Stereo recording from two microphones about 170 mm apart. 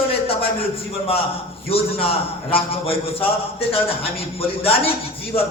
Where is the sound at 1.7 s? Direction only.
35° left (ahead or behind).